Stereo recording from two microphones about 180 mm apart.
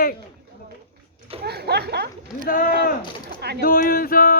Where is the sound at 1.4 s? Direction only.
65° right (ahead or behind).